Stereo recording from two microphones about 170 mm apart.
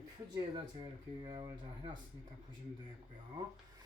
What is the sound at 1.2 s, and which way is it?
Speech, 30° right (ahead or behind).